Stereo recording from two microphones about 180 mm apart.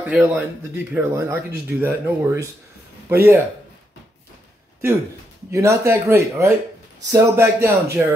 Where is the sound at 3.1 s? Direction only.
10° right (ahead or behind).